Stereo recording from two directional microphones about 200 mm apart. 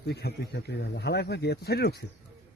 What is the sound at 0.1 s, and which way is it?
Speech, 55° left (ahead or behind).